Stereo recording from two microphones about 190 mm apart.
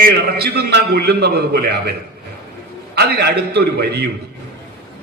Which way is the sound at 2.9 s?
60° right (ahead or behind).